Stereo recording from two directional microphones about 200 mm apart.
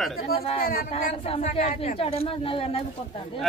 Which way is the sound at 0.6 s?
45° left (ahead or behind).